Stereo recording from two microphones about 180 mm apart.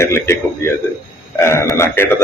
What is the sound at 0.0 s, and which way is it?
Speech, 15° left (ahead or behind).